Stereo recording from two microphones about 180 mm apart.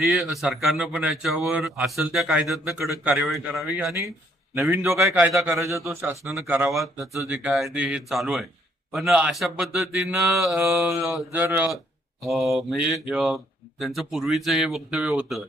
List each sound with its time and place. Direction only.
0.0 s speech: centre (ahead or behind)
4.7 s a man's voice: 15° right (ahead or behind)